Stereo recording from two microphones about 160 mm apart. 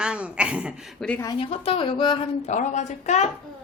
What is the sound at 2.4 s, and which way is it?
Speech, 50° left (ahead or behind).